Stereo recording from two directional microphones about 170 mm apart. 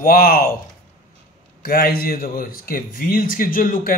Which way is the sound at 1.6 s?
60° left (ahead or behind).